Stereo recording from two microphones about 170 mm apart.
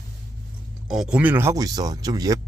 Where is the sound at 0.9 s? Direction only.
5° right (ahead or behind); by 2.4 s 20° right (ahead or behind).